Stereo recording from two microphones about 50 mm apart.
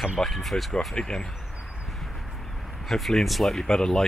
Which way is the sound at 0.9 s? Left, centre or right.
Centre.